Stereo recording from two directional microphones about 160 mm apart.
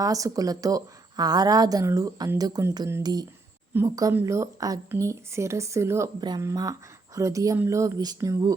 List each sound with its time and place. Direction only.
0.0 s speech: 20° right (ahead or behind)